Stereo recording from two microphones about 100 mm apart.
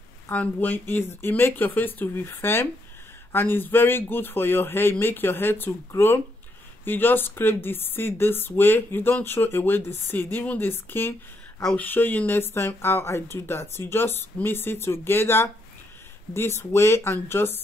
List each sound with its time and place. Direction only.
0.3 s speech: 15° left (ahead or behind)